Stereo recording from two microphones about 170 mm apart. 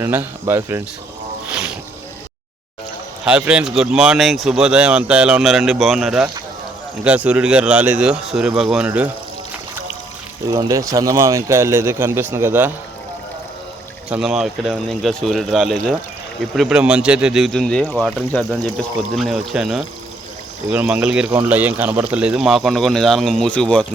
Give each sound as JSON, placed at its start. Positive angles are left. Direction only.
{"t": 0.0, "sound": "speech", "side_deg": -10}
{"t": 1.5, "sound": "boat", "side_deg": -5}
{"t": 3.2, "sound": "speech", "side_deg": -5}
{"t": 10.5, "sound": "speech", "side_deg": -20}
{"t": 14.1, "sound": "speech", "side_deg": -5}